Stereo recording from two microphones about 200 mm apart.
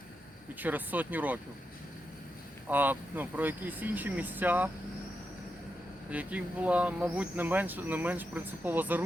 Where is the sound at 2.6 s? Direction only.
10° right (ahead or behind).